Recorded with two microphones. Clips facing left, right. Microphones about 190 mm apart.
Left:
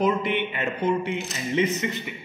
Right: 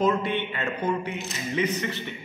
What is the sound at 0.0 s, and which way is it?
Speech, 15° left (ahead or behind).